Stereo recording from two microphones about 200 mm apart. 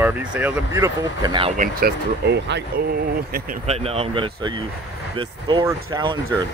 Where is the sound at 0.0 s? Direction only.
5° right (ahead or behind).